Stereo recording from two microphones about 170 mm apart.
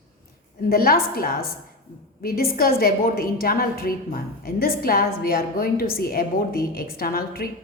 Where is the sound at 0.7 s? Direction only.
60° left (ahead or behind).